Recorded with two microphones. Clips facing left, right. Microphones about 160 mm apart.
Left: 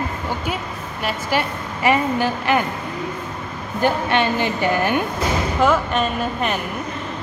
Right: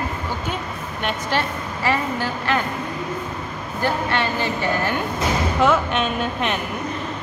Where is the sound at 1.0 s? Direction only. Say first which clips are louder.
Left 1 dB; 10° left (ahead or behind).